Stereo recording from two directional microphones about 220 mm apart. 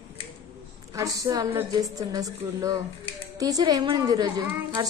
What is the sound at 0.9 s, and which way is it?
A child's voice, 15° right (ahead or behind).